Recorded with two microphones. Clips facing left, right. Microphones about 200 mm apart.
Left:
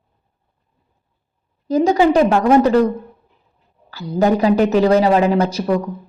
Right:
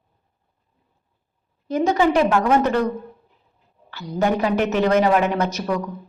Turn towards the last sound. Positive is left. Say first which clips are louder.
# left 5 dB
turn(degrees=30)  # may be behind; listen again after turning